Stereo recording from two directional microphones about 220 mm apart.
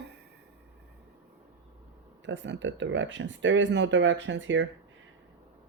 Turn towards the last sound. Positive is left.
turn(degrees=-55)  # may be behind; listen again after turning